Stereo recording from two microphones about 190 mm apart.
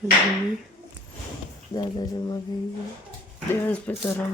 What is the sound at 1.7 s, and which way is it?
Speech, 20° left (ahead or behind).